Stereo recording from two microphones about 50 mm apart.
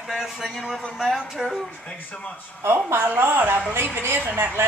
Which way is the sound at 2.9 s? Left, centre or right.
Right.